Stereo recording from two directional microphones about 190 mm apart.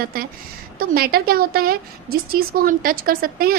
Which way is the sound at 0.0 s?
50° right (ahead or behind).